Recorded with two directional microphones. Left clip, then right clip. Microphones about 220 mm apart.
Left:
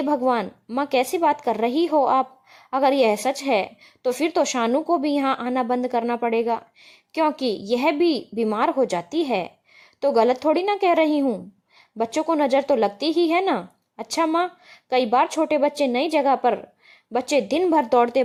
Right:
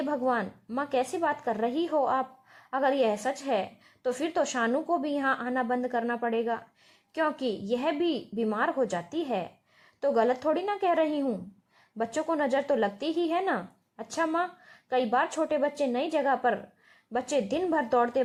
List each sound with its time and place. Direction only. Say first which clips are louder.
0.0 s a woman's voice: left 7 dB; 20° left (ahead or behind)